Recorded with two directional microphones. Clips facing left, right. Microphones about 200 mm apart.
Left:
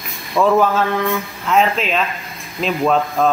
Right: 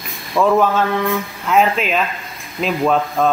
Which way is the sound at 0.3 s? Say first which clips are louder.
Even; centre (ahead or behind).